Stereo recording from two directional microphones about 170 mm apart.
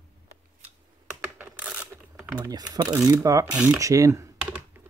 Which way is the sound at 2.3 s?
25° right (ahead or behind).